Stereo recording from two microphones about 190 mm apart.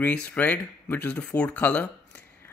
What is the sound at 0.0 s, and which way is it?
Speech, 10° left (ahead or behind).